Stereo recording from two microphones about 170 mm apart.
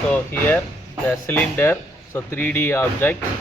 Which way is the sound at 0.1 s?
10° left (ahead or behind).